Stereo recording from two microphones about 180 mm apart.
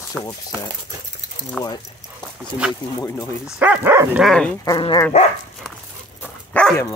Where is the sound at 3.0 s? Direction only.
15° left (ahead or behind).